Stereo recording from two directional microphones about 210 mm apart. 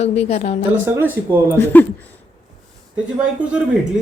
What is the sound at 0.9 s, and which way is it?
Speech, 10° right (ahead or behind).